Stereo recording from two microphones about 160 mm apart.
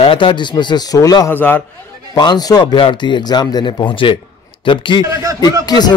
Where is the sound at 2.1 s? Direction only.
25° left (ahead or behind).